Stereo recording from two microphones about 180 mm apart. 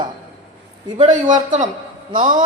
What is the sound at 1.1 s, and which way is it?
Speech, 45° right (ahead or behind).